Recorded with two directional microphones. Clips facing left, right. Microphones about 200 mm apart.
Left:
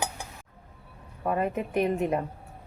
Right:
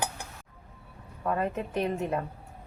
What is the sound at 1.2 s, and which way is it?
Speech, 15° left (ahead or behind).